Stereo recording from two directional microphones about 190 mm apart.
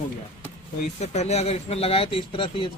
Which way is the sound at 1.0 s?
35° left (ahead or behind).